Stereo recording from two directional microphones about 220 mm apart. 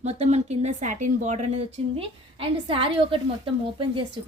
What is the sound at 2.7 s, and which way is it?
A woman's voice, 25° right (ahead or behind).